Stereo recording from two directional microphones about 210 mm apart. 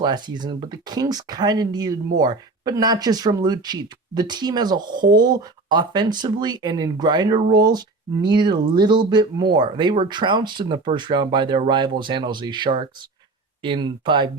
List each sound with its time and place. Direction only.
0.0 s speech: 20° right (ahead or behind)